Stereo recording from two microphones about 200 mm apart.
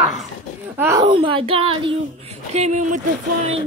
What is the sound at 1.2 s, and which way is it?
A woman's voice, 25° right (ahead or behind).